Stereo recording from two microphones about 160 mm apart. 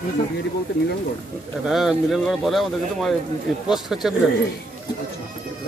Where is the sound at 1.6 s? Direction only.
Centre (ahead or behind).